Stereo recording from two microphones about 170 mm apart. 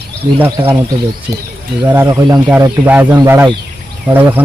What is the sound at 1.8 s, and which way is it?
Speech, 15° right (ahead or behind).